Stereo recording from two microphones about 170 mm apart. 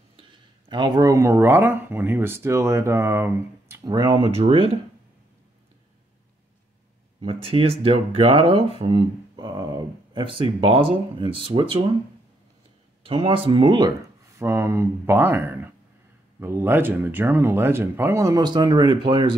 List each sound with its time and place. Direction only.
0.2 s speech: 30° right (ahead or behind)
7.2 s speech: 30° right (ahead or behind)
13.0 s speech: 35° right (ahead or behind)